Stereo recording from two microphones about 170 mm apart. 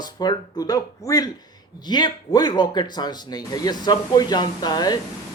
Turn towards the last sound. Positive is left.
turn(degrees=25)  # may be behind; listen again after turning